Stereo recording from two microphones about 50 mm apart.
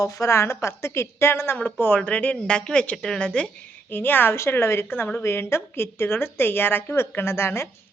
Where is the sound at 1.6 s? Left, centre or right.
Left.